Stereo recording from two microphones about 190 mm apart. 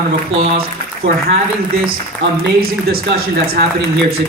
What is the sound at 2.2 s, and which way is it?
Speech, 70° right (ahead or behind).